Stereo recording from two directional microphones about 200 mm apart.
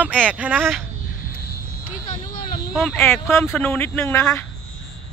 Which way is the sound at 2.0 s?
40° left (ahead or behind).